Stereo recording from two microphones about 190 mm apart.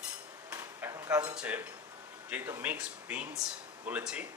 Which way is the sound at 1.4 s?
10° right (ahead or behind).